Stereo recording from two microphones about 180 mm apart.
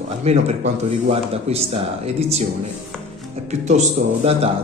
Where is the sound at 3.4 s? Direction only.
40° right (ahead or behind).